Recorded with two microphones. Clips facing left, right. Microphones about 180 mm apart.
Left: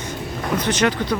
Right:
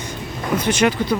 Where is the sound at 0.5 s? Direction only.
10° right (ahead or behind).